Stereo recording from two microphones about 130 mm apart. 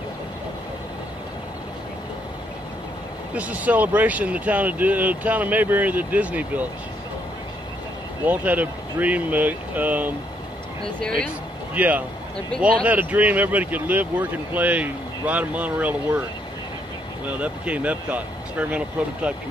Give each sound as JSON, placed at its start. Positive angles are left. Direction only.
{"t": 3.3, "sound": "speech", "side_deg": -10}
{"t": 8.3, "sound": "speech", "side_deg": -15}
{"t": 11.0, "sound": "speech", "side_deg": 10}
{"t": 11.7, "sound": "speech", "side_deg": -10}
{"t": 17.3, "sound": "speech", "side_deg": -10}